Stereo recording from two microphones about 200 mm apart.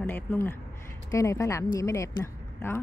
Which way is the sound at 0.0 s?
10° left (ahead or behind).